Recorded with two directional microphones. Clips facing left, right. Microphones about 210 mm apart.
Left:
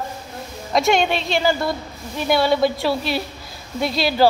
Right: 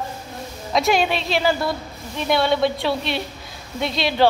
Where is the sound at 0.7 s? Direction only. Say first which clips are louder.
Left 1 dB; centre (ahead or behind).